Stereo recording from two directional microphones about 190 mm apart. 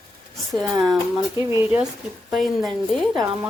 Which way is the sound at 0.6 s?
20° right (ahead or behind).